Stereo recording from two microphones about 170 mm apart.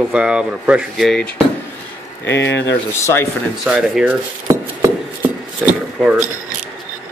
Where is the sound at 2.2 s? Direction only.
90° left.